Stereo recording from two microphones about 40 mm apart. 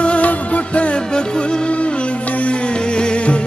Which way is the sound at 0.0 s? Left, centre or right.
Left.